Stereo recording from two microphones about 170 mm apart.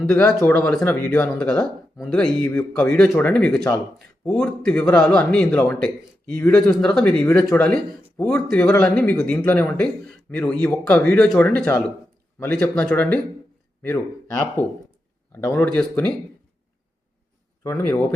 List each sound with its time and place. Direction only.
0.0 s speech: 10° left (ahead or behind)
17.6 s speech: 15° left (ahead or behind)